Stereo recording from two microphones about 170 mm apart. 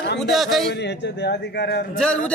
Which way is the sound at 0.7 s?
85° left.